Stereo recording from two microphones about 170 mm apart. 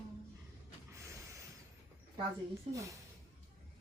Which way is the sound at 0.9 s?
20° right (ahead or behind).